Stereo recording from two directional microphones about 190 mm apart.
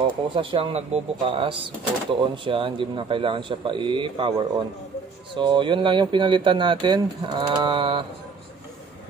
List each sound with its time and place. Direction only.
0.4 s speech: 30° right (ahead or behind)